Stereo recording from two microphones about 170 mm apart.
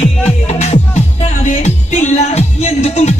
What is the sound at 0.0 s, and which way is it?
Music, 40° left (ahead or behind).